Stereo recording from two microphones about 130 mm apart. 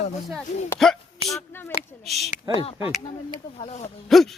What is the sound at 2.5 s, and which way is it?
Speech, 45° left (ahead or behind).